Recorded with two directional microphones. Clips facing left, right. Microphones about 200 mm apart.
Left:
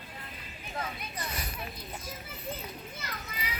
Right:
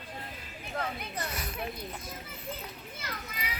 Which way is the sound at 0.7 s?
60° right (ahead or behind).